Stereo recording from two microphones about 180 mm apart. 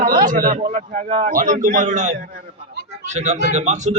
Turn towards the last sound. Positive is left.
turn(degrees=-40)  # may be behind; listen again after turning